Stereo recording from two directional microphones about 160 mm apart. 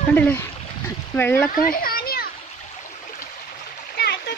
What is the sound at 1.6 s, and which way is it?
Children playing, 65° left (ahead or behind).